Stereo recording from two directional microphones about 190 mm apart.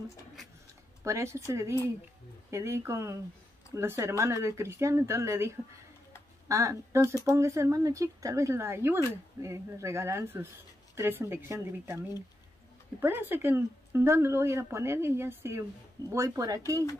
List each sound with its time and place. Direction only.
1.0 s speech: 15° right (ahead or behind)
13.0 s speech: 10° right (ahead or behind)